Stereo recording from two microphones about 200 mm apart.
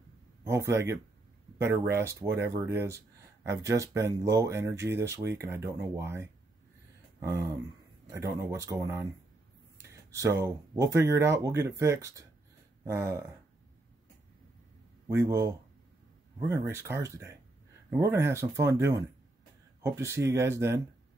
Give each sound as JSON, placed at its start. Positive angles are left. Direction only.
{"t": 0.4, "sound": "speech", "side_deg": -15}
{"t": 7.2, "sound": "speech", "side_deg": -15}
{"t": 15.2, "sound": "speech", "side_deg": -15}